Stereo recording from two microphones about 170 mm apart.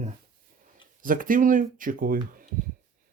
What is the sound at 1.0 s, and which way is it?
Speech, 50° right (ahead or behind).